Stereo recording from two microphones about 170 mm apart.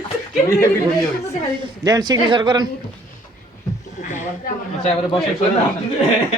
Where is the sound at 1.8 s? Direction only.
25° right (ahead or behind).